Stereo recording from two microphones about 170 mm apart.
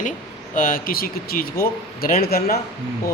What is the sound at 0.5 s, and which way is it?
A man's voice, 55° left (ahead or behind).